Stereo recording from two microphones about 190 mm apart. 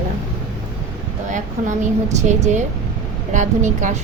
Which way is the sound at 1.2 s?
40° right (ahead or behind).